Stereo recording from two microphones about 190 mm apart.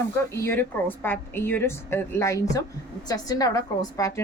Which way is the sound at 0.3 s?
10° left (ahead or behind).